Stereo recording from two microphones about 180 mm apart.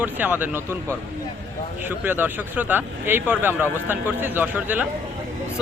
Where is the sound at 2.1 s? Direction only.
10° right (ahead or behind).